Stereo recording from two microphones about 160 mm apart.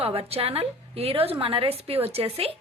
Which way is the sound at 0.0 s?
40° right (ahead or behind).